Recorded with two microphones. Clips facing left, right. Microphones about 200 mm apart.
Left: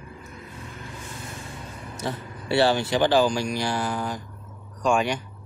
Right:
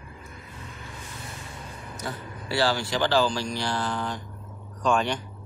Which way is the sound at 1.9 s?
25° left (ahead or behind).